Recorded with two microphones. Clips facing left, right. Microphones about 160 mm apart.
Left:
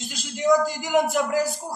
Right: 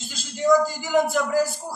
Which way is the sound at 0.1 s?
15° left (ahead or behind).